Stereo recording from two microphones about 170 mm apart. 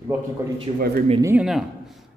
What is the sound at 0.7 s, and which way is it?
Speech, 35° right (ahead or behind).